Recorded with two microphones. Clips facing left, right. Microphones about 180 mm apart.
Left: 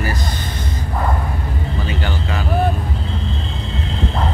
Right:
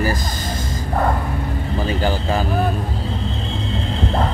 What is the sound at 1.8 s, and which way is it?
Speech, 40° right (ahead or behind).